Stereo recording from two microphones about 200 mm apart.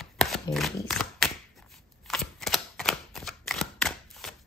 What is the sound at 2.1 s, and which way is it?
Typewriter, centre (ahead or behind).